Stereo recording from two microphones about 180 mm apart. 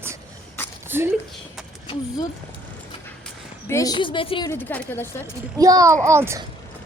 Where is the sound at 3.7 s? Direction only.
20° left (ahead or behind).